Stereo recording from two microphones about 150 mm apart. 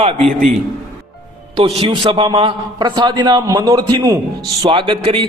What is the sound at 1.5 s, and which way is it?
A man's voice, 40° right (ahead or behind).